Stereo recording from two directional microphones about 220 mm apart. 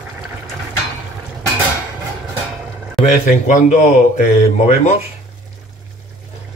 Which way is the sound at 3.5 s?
35° left (ahead or behind).